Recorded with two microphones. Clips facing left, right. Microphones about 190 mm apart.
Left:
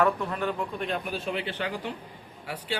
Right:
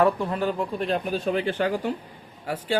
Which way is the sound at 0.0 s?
30° right (ahead or behind).